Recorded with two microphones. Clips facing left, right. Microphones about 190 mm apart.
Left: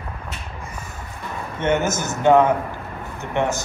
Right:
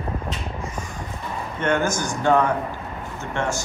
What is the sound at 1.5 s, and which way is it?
A man's voice, 20° left (ahead or behind).